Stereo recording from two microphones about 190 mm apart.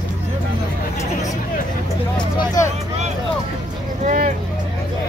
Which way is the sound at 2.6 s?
15° left (ahead or behind).